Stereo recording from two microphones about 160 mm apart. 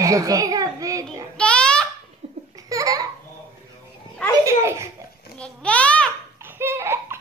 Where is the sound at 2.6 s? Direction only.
20° right (ahead or behind).